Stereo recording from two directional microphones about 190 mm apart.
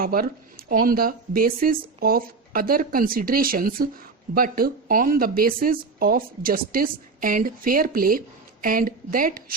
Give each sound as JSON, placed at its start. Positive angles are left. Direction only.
{"t": 0.0, "sound": "speech", "side_deg": -50}